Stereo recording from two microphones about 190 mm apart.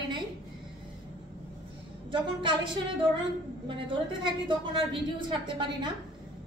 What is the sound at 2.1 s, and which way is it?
A woman's voice, 25° right (ahead or behind).